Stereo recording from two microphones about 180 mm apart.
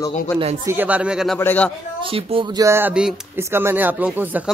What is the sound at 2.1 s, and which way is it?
Speech, 30° right (ahead or behind).